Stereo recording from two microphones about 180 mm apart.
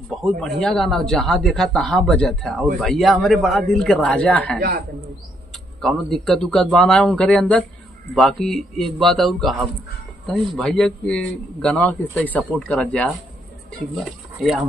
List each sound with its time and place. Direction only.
0.1 s speech: centre (ahead or behind)
4.6 s speech: 50° right (ahead or behind)
5.8 s a man's voice: centre (ahead or behind)